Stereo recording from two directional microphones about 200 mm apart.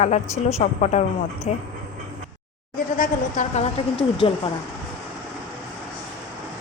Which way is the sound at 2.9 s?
40° left (ahead or behind).